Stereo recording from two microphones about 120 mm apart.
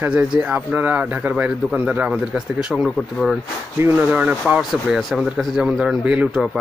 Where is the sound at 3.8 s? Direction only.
15° right (ahead or behind).